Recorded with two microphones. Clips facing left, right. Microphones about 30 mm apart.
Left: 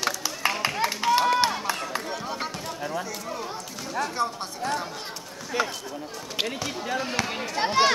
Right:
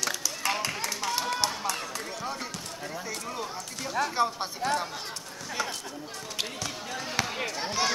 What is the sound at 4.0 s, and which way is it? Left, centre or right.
Speech, centre.